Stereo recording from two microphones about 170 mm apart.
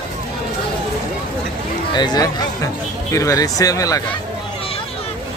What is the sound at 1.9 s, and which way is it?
Speech, 25° left (ahead or behind).